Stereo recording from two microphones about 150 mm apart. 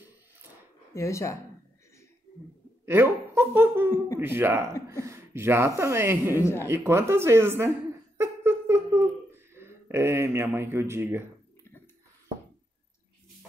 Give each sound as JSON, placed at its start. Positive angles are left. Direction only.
{"t": 0.9, "sound": "speech", "side_deg": 20}
{"t": 2.8, "sound": "speech", "side_deg": -15}
{"t": 6.3, "sound": "speech", "side_deg": 15}
{"t": 6.7, "sound": "speech", "side_deg": -15}
{"t": 8.2, "sound": "a sound", "side_deg": -15}